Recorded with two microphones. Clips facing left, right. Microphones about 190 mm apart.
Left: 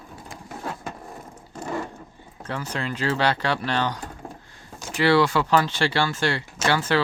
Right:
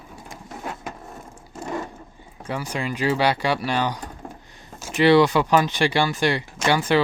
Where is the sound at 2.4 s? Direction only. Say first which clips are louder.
Right 2 dB; 10° right (ahead or behind).